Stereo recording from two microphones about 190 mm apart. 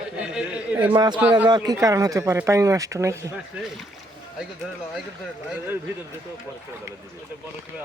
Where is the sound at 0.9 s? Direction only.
25° right (ahead or behind).